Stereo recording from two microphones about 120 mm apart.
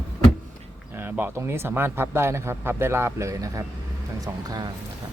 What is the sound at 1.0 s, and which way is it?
Speech, 15° right (ahead or behind).